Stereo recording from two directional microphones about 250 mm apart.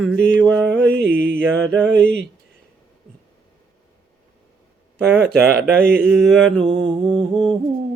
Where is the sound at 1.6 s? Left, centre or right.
Centre.